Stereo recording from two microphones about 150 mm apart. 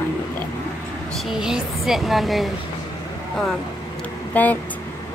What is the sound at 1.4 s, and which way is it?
Speech, 5° right (ahead or behind).